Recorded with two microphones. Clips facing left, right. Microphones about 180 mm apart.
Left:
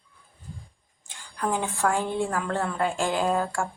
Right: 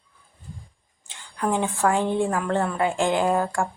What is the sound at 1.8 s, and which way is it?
Speech, 15° right (ahead or behind).